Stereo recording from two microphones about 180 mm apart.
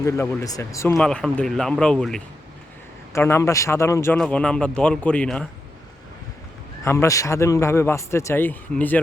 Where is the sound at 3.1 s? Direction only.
15° left (ahead or behind).